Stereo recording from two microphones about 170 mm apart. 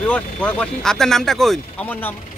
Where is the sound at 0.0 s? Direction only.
5° left (ahead or behind).